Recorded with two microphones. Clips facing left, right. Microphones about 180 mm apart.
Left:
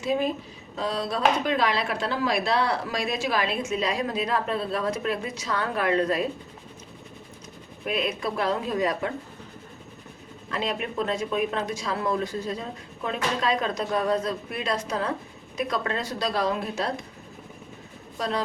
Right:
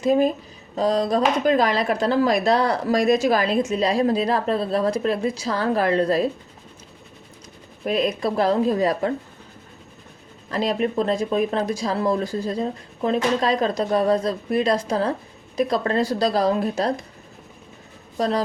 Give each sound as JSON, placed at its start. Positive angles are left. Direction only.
{"t": 0.0, "sound": "speech", "side_deg": -40}
{"t": 7.9, "sound": "speech", "side_deg": -40}
{"t": 10.5, "sound": "speech", "side_deg": -35}